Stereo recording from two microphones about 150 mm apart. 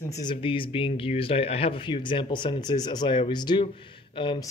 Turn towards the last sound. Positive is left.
turn(degrees=35)  # may be behind; listen again after turning